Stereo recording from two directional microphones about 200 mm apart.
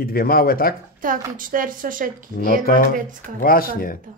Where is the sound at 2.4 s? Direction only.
45° left (ahead or behind).